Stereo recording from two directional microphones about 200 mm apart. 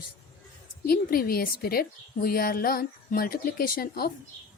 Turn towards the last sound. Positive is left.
turn(degrees=50)  # may be behind; listen again after turning